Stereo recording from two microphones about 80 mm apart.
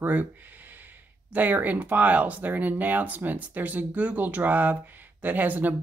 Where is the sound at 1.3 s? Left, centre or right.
Right.